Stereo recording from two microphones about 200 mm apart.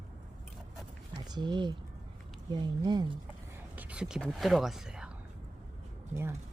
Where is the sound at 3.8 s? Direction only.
5° right (ahead or behind).